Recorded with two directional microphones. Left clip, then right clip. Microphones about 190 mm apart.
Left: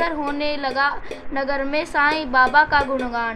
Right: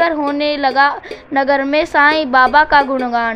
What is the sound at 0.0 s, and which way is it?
A woman's voice, 35° right (ahead or behind).